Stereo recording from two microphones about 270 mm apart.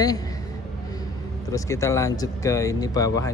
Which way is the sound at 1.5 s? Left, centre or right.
Centre.